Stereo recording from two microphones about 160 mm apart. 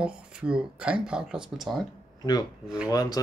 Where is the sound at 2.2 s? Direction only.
25° left (ahead or behind).